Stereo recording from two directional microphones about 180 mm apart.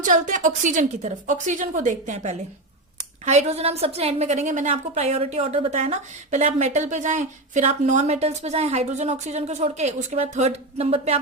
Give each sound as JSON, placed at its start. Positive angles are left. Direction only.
{"t": 0.0, "sound": "a woman's voice", "side_deg": -45}